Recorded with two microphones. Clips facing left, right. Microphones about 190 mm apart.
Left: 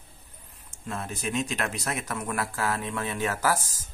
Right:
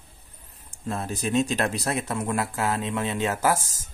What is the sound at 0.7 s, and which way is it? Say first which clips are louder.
Speech: right 4 dB; 35° right (ahead or behind).